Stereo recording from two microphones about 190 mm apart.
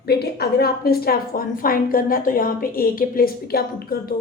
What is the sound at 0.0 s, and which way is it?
A woman's voice, 55° left (ahead or behind).